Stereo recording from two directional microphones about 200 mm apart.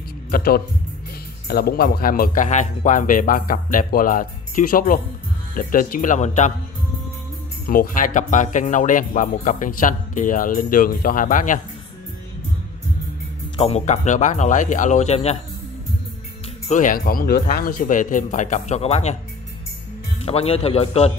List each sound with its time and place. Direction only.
0.3 s speech: 50° left (ahead or behind)
7.6 s speech: 45° left (ahead or behind)
13.6 s speech: 30° left (ahead or behind)
16.6 s speech: 40° left (ahead or behind)
20.2 s speech: 30° left (ahead or behind)